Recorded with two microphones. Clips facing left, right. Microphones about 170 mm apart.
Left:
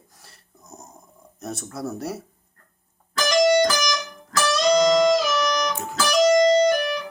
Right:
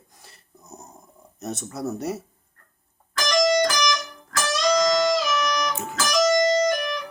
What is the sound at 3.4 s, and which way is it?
Music, 25° left (ahead or behind).